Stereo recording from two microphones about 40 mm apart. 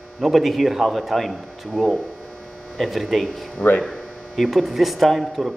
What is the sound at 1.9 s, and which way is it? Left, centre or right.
Speech, centre.